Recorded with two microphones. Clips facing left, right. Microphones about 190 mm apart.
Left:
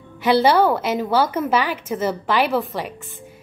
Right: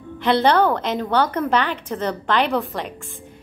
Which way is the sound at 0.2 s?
5° left (ahead or behind).